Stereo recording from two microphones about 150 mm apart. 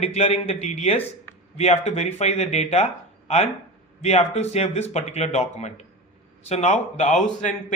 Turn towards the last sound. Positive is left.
turn(degrees=50)  # may be behind; listen again after turning